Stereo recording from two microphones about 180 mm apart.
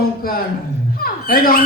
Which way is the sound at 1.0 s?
55° left (ahead or behind).